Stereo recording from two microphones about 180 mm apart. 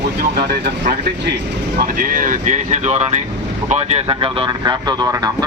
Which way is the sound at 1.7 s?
50° right (ahead or behind).